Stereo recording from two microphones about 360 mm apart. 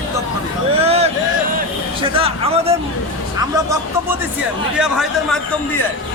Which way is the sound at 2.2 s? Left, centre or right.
Centre.